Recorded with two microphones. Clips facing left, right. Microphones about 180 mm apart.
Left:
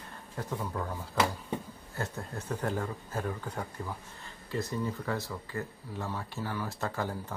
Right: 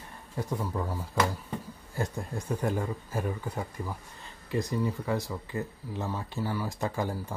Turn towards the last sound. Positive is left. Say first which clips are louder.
# right 3 dB
turn(degrees=-15)  # may be behind; listen again after turning